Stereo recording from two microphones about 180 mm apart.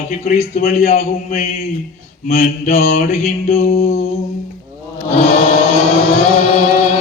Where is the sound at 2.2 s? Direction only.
35° left (ahead or behind).